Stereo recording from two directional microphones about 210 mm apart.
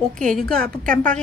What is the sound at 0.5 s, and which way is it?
Speech, 45° right (ahead or behind).